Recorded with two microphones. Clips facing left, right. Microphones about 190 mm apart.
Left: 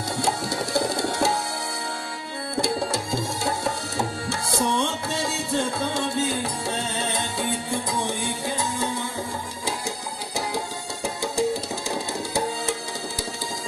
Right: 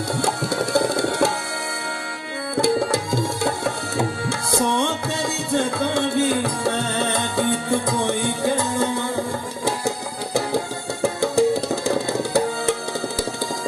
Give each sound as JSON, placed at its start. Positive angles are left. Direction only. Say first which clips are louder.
{"t": 0.2, "sound": "tabla", "louder": "right 2 dB", "side_deg": -55}
{"t": 2.5, "sound": "tabla", "louder": "right 6 dB", "side_deg": -55}
{"t": 9.7, "sound": "music", "louder": "right 7 dB", "side_deg": -60}